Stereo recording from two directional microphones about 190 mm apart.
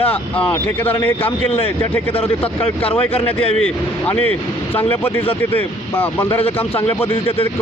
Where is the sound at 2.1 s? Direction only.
30° left (ahead or behind).